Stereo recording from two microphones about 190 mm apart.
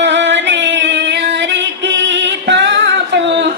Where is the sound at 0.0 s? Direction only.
70° right (ahead or behind).